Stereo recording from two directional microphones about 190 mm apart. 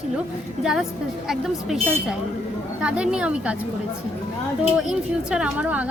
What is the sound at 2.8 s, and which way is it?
Speech, 5° right (ahead or behind).